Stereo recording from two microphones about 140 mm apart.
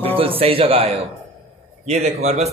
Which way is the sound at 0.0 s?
40° right (ahead or behind).